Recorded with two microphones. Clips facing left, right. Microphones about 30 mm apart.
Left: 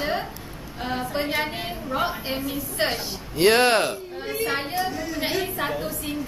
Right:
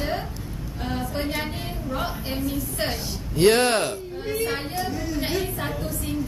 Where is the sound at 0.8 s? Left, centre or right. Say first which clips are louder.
Left 2 dB; centre.